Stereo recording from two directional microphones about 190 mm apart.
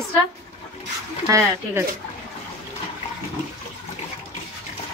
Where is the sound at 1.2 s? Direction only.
15° right (ahead or behind).